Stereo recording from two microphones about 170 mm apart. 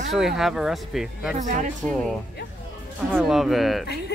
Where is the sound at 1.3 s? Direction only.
45° right (ahead or behind).